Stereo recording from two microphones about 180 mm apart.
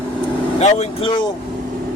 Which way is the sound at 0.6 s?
35° left (ahead or behind).